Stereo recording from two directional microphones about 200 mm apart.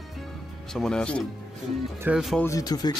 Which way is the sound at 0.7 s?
5° left (ahead or behind).